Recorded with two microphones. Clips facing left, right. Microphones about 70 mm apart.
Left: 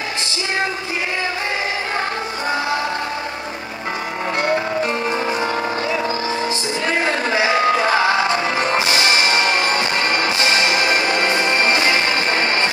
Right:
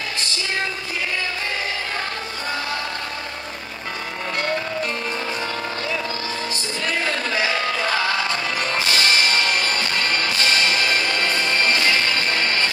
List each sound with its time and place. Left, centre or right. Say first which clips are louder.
4.4 s music: left 5 dB; centre